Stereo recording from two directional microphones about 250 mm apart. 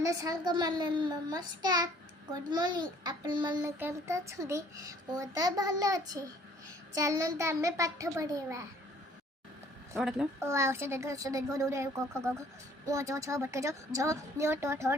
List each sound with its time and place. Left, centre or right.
0.0 s a child's voice: centre
9.9 s a child's voice: centre